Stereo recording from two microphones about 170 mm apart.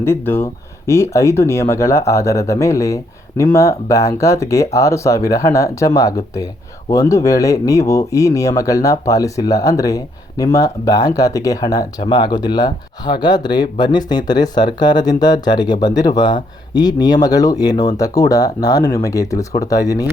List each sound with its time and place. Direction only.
0.0 s speech: 15° left (ahead or behind)